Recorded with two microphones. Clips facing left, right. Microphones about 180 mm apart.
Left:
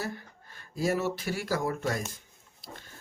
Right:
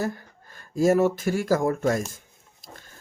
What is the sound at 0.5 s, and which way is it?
Speech, 45° right (ahead or behind).